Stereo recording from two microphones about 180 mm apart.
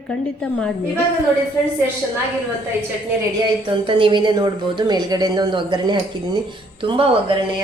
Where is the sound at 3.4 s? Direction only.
30° right (ahead or behind).